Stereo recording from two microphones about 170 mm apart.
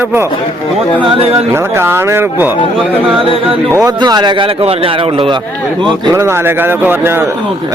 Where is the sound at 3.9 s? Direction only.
25° right (ahead or behind).